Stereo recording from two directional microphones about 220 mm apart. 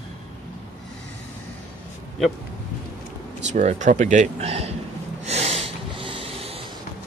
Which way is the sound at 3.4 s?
35° right (ahead or behind).